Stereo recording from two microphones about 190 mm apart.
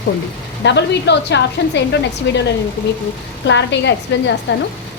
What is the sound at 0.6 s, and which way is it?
A woman's voice, 65° left (ahead or behind).